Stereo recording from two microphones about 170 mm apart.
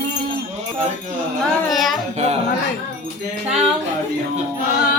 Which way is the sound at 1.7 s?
Centre (ahead or behind).